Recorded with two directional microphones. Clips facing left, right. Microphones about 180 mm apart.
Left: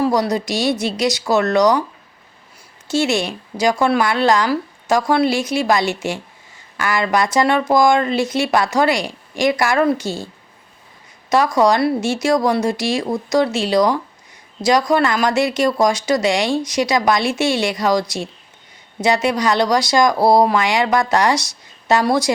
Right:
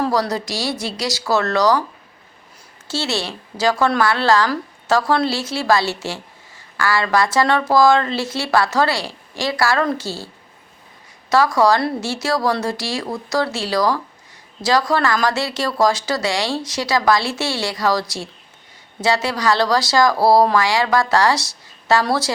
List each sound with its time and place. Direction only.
0.0 s speech: 20° left (ahead or behind)
2.8 s speech: 15° left (ahead or behind)
11.3 s speech: 20° left (ahead or behind)